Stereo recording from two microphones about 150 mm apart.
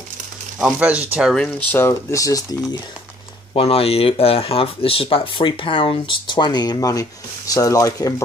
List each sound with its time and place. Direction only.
0.6 s speech: 5° right (ahead or behind)
1.7 s speech: 15° left (ahead or behind)
3.5 s speech: 40° left (ahead or behind); by 8.1 s 20° left (ahead or behind)